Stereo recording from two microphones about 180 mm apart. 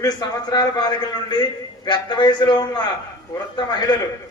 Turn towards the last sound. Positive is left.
turn(degrees=25)  # may be behind; listen again after turning